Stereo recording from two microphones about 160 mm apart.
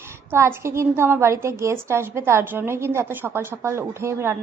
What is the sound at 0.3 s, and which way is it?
A woman's voice, 15° right (ahead or behind).